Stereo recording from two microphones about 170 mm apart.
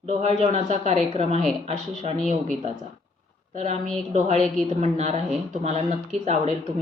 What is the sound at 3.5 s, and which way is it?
Speech, 45° right (ahead or behind).